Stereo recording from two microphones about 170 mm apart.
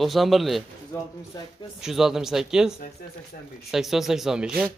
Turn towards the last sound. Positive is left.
turn(degrees=-5)  # may be behind; listen again after turning